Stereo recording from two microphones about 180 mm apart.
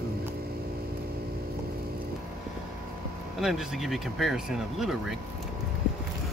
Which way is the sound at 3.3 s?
Centre (ahead or behind).